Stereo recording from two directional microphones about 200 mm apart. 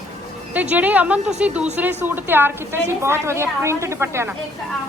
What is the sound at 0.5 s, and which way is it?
A woman's voice, 5° right (ahead or behind).